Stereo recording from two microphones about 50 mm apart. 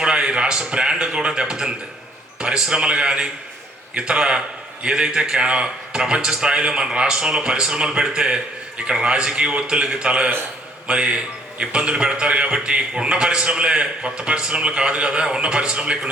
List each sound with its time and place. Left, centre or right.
0.0 s a man's voice: centre